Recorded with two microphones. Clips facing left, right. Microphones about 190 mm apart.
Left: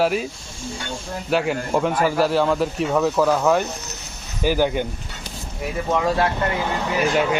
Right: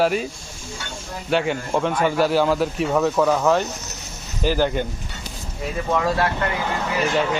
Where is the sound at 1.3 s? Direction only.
5° left (ahead or behind).